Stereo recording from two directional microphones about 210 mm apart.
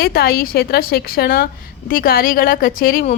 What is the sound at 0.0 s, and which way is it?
A woman's voice, 45° left (ahead or behind).